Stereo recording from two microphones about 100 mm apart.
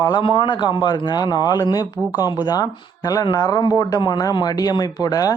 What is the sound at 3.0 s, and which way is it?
Speech, 40° left (ahead or behind).